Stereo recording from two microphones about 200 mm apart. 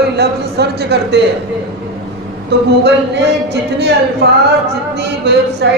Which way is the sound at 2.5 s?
60° right (ahead or behind).